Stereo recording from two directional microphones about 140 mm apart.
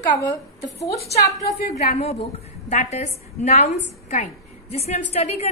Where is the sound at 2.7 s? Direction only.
55° left (ahead or behind).